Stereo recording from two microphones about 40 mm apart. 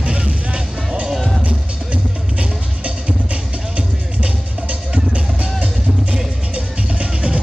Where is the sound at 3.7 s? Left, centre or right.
Right.